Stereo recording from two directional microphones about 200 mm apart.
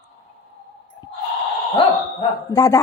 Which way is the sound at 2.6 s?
15° left (ahead or behind).